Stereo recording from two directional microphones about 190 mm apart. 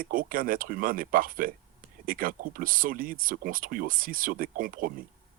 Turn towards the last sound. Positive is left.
turn(degrees=-50)  # may be behind; listen again after turning